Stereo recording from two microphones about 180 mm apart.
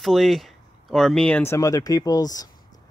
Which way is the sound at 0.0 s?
Centre (ahead or behind).